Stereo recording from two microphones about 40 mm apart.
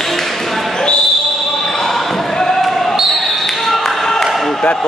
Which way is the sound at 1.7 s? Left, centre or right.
Centre.